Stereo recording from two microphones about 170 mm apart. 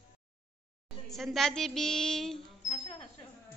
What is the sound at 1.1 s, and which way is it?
Speech, centre (ahead or behind).